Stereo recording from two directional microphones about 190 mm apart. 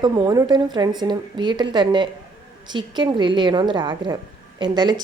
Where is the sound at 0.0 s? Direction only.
20° right (ahead or behind).